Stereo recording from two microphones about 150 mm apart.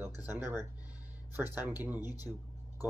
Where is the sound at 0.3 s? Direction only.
15° right (ahead or behind).